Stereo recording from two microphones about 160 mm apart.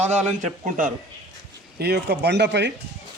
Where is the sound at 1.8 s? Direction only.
90° right.